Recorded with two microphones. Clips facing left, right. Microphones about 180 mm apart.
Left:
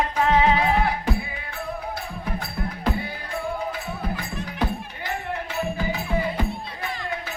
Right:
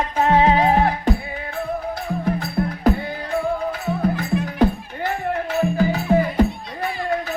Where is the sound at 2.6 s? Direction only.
40° right (ahead or behind).